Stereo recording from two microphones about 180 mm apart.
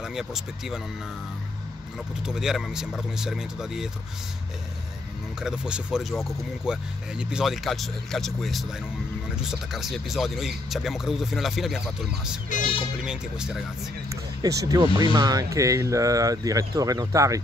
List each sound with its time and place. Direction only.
0.0 s speech: 5° right (ahead or behind)
2.2 s speech: centre (ahead or behind)
5.4 s speech: 5° right (ahead or behind)
14.4 s speech: 20° right (ahead or behind)